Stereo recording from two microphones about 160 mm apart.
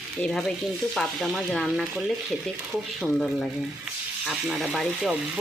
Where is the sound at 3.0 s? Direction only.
Centre (ahead or behind).